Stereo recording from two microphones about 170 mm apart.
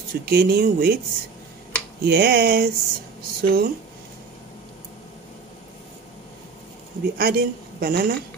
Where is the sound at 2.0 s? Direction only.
70° right (ahead or behind).